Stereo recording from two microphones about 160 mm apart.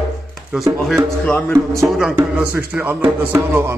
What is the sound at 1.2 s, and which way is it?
Speech, 5° left (ahead or behind).